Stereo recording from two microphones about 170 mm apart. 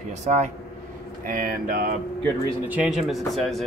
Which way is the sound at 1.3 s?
55° right (ahead or behind).